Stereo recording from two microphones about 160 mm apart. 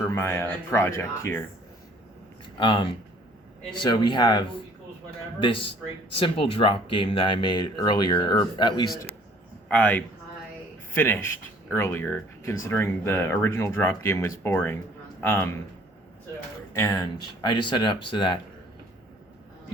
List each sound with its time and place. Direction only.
0.0 s speech: 15° left (ahead or behind)
2.6 s a man's voice: 30° left (ahead or behind)
9.6 s speech: 10° left (ahead or behind)
16.7 s speech: 20° left (ahead or behind)